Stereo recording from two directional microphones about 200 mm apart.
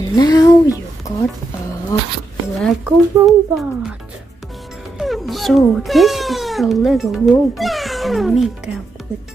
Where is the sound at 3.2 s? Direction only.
15° right (ahead or behind).